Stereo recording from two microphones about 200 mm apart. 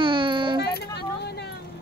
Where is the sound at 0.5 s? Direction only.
55° left (ahead or behind).